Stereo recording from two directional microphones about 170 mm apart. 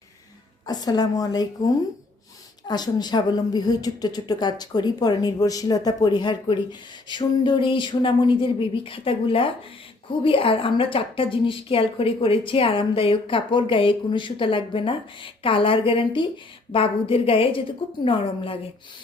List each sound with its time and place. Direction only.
0.7 s a woman's voice: 25° left (ahead or behind)
2.6 s a woman's voice: 25° left (ahead or behind)